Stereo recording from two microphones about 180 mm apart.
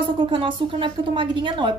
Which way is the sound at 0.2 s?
30° right (ahead or behind).